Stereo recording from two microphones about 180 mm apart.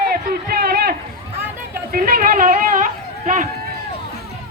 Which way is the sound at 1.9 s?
55° right (ahead or behind).